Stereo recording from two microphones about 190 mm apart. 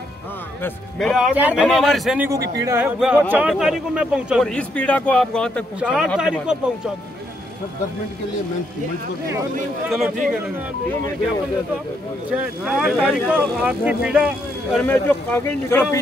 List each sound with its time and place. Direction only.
0.9 s a man's voice: centre (ahead or behind)
2.5 s a man's voice: 15° right (ahead or behind)
9.8 s a man's voice: 5° right (ahead or behind)
12.3 s a man's voice: 5° right (ahead or behind)
14.8 s speech: 10° left (ahead or behind)